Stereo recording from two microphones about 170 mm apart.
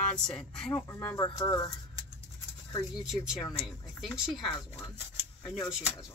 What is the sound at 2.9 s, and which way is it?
Speech, 5° right (ahead or behind).